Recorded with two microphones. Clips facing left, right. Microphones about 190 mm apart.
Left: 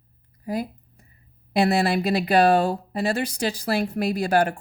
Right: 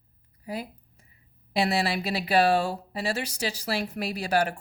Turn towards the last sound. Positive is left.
turn(degrees=55)  # may be behind; listen again after turning